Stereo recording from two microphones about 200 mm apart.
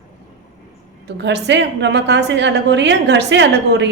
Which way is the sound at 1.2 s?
60° right (ahead or behind).